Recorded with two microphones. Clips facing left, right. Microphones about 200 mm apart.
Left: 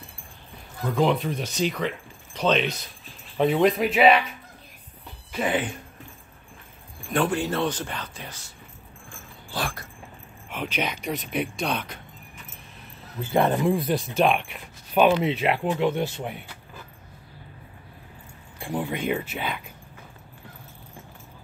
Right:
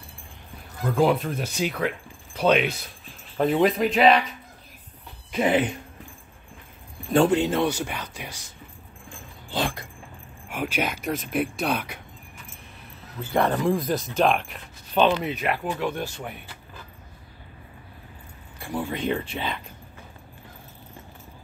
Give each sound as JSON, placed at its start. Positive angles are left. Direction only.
{"t": 0.8, "sound": "speech", "side_deg": -5}
{"t": 5.3, "sound": "speech", "side_deg": -20}
{"t": 7.1, "sound": "speech", "side_deg": -25}
{"t": 9.1, "sound": "dog", "side_deg": -20}
{"t": 10.5, "sound": "speech", "side_deg": -10}
{"t": 13.3, "sound": "speech", "side_deg": 20}
{"t": 13.6, "sound": "speech", "side_deg": 5}
{"t": 15.2, "sound": "speech", "side_deg": 25}
{"t": 18.6, "sound": "speech", "side_deg": 15}